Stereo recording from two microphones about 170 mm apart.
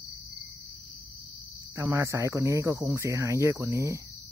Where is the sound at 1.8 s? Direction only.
15° right (ahead or behind).